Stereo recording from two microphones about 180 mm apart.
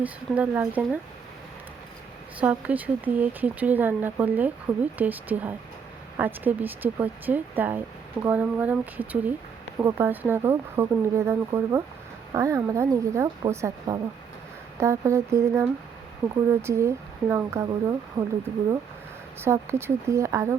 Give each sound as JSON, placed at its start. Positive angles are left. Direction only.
{"t": 0.0, "sound": "speech", "side_deg": -10}
{"t": 2.4, "sound": "speech", "side_deg": -10}
{"t": 19.4, "sound": "speech", "side_deg": -15}